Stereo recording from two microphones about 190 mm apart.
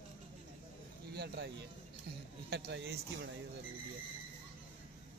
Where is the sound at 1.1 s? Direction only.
60° right (ahead or behind).